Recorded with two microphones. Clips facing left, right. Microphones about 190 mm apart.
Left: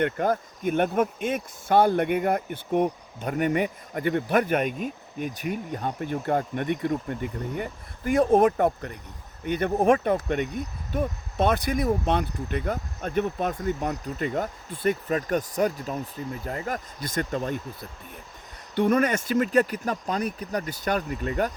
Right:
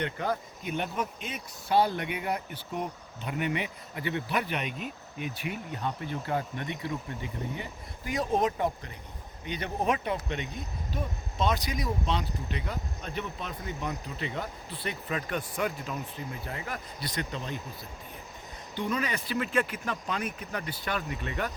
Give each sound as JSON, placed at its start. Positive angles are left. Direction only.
{"t": 0.0, "sound": "speech", "side_deg": 50}
{"t": 18.7, "sound": "speech", "side_deg": 55}